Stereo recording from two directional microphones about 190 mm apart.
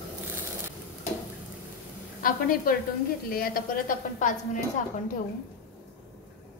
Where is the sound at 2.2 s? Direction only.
50° left (ahead or behind).